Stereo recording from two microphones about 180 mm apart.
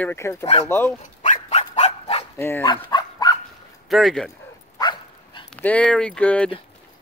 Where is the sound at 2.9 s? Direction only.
25° left (ahead or behind).